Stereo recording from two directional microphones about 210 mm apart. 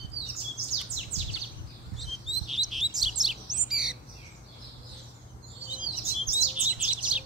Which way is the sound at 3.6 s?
Centre (ahead or behind).